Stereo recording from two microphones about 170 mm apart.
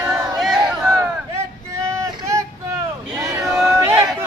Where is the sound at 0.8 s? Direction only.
20° right (ahead or behind).